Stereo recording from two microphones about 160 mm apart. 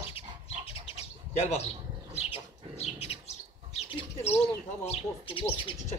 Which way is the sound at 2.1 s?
40° left (ahead or behind).